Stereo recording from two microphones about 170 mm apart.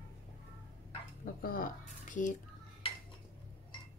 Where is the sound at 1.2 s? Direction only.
55° left (ahead or behind).